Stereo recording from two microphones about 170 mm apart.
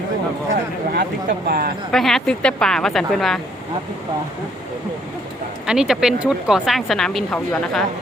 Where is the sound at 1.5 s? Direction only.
60° right (ahead or behind).